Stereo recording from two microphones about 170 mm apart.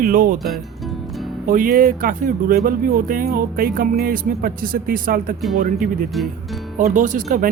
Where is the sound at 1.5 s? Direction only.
55° right (ahead or behind).